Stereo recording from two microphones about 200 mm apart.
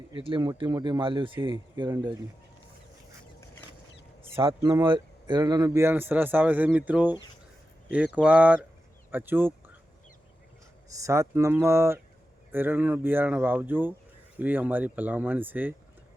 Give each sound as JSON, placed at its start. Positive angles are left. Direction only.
{"t": 0.1, "sound": "speech", "side_deg": -25}
{"t": 4.4, "sound": "speech", "side_deg": -25}
{"t": 10.9, "sound": "speech", "side_deg": -15}